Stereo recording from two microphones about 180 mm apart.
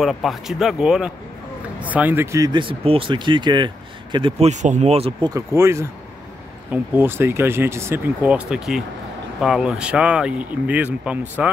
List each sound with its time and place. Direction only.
0.0 s speech: centre (ahead or behind); by 5.3 s 35° right (ahead or behind)
5.3 s speech: 15° right (ahead or behind)